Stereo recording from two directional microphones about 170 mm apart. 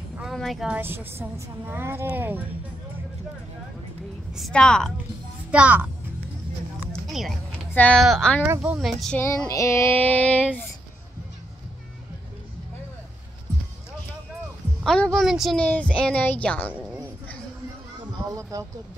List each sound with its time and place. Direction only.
0.2 s speech: centre (ahead or behind)
4.4 s a woman's voice: 5° left (ahead or behind)
5.5 s speech: 10° right (ahead or behind)
6.9 s a sound: centre (ahead or behind)
7.7 s a woman's voice: 10° left (ahead or behind)
8.5 s a woman's voice: 5° right (ahead or behind)
9.5 s a child's voice: 15° left (ahead or behind)
14.8 s a woman's voice: 5° left (ahead or behind)
18.5 s speech: 20° right (ahead or behind)